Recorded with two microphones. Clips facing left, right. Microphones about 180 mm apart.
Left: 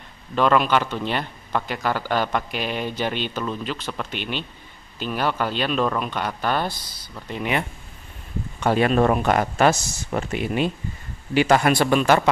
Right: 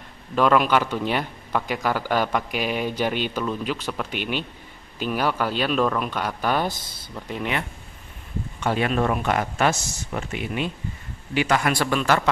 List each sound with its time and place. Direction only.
0.4 s a man's voice: 5° right (ahead or behind)
8.5 s speech: 40° left (ahead or behind); by 12.3 s 20° left (ahead or behind)